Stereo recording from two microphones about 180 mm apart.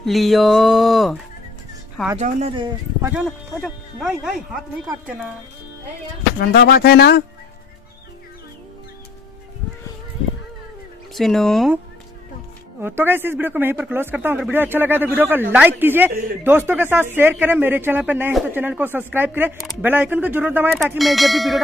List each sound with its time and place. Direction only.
0.0 s music: centre (ahead or behind)
2.1 s speech: 40° right (ahead or behind)
3.6 s music: centre (ahead or behind)
6.4 s speech: 60° left (ahead or behind)
11.1 s music: centre (ahead or behind)
12.8 s a man's voice: 10° right (ahead or behind)